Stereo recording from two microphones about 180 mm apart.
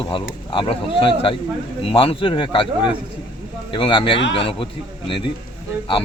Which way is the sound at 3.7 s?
25° left (ahead or behind).